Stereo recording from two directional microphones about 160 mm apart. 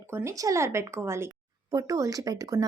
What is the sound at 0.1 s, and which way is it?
Speech, 15° right (ahead or behind).